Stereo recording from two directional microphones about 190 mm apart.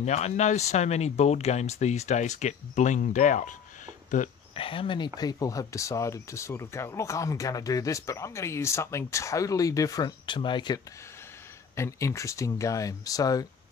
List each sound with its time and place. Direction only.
0.0 s speech: 35° left (ahead or behind)
4.6 s speech: 30° left (ahead or behind)